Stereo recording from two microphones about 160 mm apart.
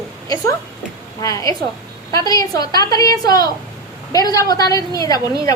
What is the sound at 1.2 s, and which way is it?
A woman's voice, 20° left (ahead or behind).